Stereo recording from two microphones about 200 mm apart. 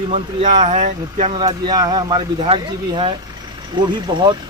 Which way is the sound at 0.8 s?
40° right (ahead or behind).